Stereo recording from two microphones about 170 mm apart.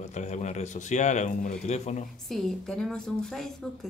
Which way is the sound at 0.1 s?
40° left (ahead or behind).